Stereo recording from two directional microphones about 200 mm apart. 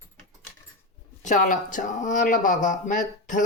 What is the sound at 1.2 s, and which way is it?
Speech, 40° left (ahead or behind).